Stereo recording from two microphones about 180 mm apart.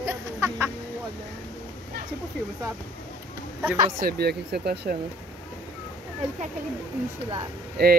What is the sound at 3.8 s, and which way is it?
Speech, 55° right (ahead or behind).